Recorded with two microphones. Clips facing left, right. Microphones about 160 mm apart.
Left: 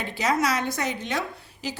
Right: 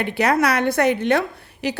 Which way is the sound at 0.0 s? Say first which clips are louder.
Right 6 dB; 65° right (ahead or behind).